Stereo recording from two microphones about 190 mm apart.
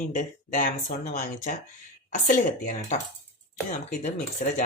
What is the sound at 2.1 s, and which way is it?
Speech, 40° left (ahead or behind).